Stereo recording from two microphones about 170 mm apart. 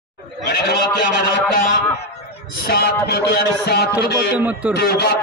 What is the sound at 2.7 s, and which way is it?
A man's voice, 70° left (ahead or behind).